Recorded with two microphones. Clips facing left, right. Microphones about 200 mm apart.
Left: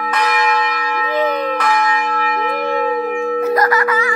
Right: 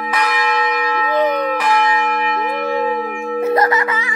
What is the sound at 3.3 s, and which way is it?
Music, 25° right (ahead or behind).